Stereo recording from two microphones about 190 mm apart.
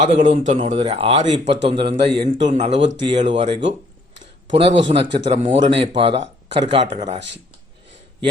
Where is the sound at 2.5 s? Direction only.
35° right (ahead or behind).